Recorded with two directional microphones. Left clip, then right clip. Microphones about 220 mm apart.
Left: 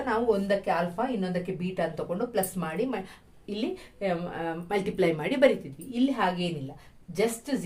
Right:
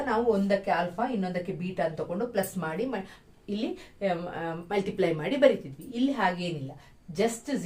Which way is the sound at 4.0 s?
35° left (ahead or behind).